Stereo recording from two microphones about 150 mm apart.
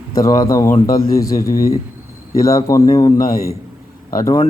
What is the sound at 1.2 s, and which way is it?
Speech, 20° left (ahead or behind).